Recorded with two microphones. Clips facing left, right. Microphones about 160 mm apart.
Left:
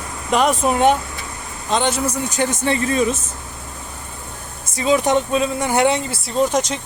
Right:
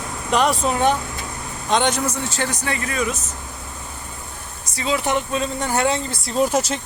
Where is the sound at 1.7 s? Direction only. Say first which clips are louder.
Even; 5° left (ahead or behind); by 3.1 s 25° left (ahead or behind).